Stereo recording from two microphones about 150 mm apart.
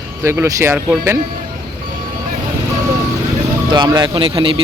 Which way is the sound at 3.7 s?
30° right (ahead or behind).